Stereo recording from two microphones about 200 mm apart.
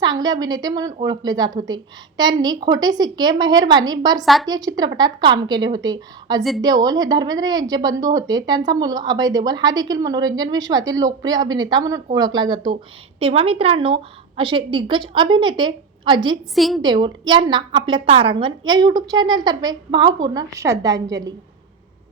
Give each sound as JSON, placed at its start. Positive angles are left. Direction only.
{"t": 0.0, "sound": "a woman's voice", "side_deg": -20}
{"t": 4.2, "sound": "a woman's voice", "side_deg": 0}
{"t": 4.4, "sound": "a woman's voice", "side_deg": -20}
{"t": 16.6, "sound": "a woman's voice", "side_deg": 0}
{"t": 16.8, "sound": "a woman's voice", "side_deg": -20}